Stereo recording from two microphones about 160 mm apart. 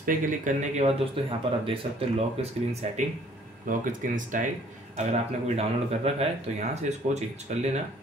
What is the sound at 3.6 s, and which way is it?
Speech, 60° right (ahead or behind).